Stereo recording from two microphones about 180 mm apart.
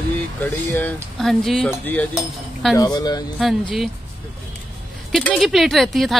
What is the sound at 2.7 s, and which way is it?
Speech, 20° left (ahead or behind).